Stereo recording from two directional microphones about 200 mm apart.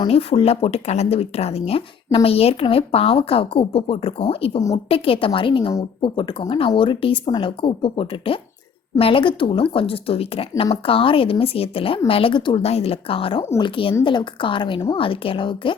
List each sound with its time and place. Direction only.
0.0 s speech: 30° left (ahead or behind)